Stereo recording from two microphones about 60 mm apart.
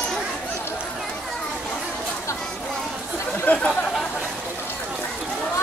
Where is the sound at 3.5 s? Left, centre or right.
Left.